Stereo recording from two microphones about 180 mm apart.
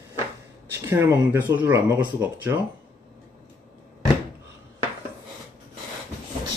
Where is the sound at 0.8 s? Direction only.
15° right (ahead or behind).